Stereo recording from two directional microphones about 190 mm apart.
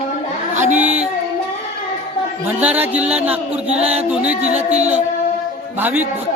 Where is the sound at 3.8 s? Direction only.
35° right (ahead or behind).